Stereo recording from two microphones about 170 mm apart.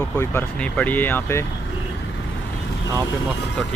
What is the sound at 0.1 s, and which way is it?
Speech, 15° left (ahead or behind).